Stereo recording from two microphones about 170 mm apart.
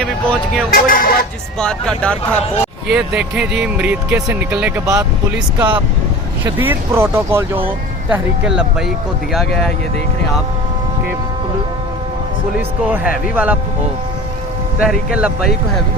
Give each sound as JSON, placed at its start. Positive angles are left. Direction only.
{"t": 0.0, "sound": "vehicle", "side_deg": 0}
{"t": 0.7, "sound": "speech", "side_deg": 55}
{"t": 1.5, "sound": "speech", "side_deg": 5}
{"t": 2.9, "sound": "speech", "side_deg": -5}
{"t": 12.8, "sound": "speech", "side_deg": -10}
{"t": 14.8, "sound": "speech", "side_deg": -5}